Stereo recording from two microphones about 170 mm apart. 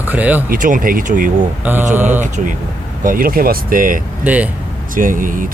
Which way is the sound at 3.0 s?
55° right (ahead or behind).